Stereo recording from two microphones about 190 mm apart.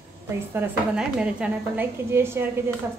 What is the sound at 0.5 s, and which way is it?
A woman's voice, 5° right (ahead or behind).